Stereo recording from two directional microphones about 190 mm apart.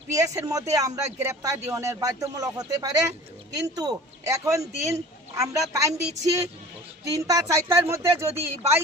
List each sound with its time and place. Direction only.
0.1 s speech: 15° right (ahead or behind)